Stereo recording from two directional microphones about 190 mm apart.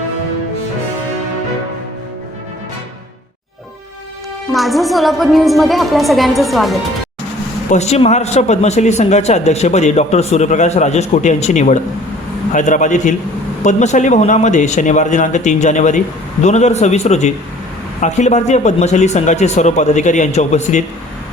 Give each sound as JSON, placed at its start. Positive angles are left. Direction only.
{"t": 4.5, "sound": "a woman's voice", "side_deg": 0}
{"t": 7.7, "sound": "a man's voice", "side_deg": 35}